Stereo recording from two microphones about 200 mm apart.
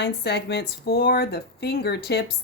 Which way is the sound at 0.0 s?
55° left (ahead or behind).